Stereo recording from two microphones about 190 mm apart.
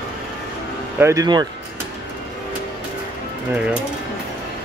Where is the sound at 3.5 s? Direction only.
5° right (ahead or behind).